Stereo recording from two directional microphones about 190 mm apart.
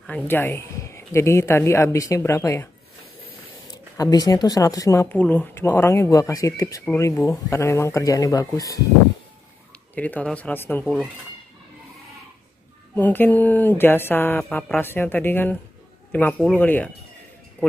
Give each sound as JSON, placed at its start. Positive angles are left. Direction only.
{"t": 0.0, "sound": "speech", "side_deg": 10}
{"t": 3.9, "sound": "speech", "side_deg": 20}
{"t": 9.9, "sound": "speech", "side_deg": 10}
{"t": 12.9, "sound": "speech", "side_deg": 10}